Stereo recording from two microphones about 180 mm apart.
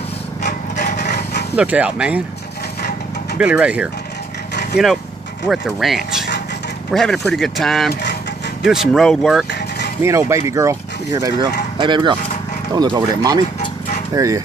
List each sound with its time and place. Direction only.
0.4 s wood: 45° left (ahead or behind)
1.6 s speech: 5° right (ahead or behind)
3.3 s speech: 5° right (ahead or behind)
5.5 s speech: centre (ahead or behind)
7.9 s a sound: 60° left (ahead or behind)
8.6 s speech: centre (ahead or behind)
10.0 s speech: 15° right (ahead or behind)